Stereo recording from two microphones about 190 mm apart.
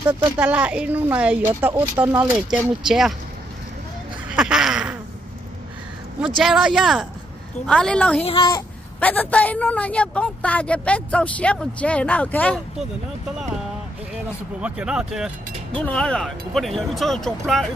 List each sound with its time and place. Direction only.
0.4 s a woman's voice: 5° right (ahead or behind)
4.4 s speech: 5° right (ahead or behind)
6.2 s speech: centre (ahead or behind)
8.2 s speech: 30° left (ahead or behind)
9.0 s a woman's voice: 10° left (ahead or behind)
14.6 s speech: 5° right (ahead or behind)